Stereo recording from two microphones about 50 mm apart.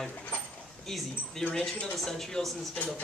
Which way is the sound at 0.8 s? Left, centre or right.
Centre.